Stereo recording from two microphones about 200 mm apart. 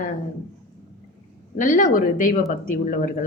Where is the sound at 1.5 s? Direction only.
40° left (ahead or behind).